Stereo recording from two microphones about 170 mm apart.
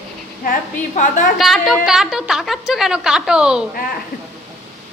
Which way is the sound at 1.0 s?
50° left (ahead or behind).